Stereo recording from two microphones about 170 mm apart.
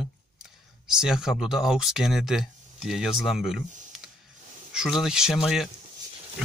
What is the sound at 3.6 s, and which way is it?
Computer keyboard, 45° right (ahead or behind).